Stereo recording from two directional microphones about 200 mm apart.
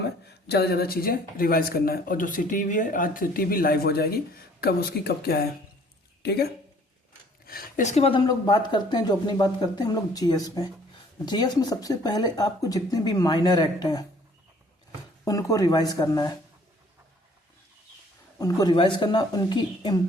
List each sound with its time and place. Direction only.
0.0 s speech: 55° left (ahead or behind)
7.4 s speech: 40° left (ahead or behind); by 14.0 s 20° left (ahead or behind)
15.2 s speech: 15° left (ahead or behind)
18.3 s speech: 20° left (ahead or behind)